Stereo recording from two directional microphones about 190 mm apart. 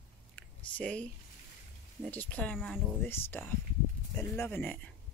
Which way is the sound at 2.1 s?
5° left (ahead or behind).